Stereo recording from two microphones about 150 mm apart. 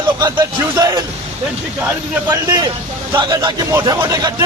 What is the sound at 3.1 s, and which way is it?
Speech, 30° right (ahead or behind).